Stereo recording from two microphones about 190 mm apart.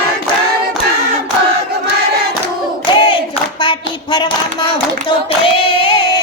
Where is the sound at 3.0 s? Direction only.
25° left (ahead or behind).